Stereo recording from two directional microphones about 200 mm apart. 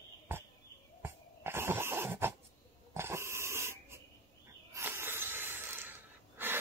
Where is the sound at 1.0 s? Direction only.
10° right (ahead or behind).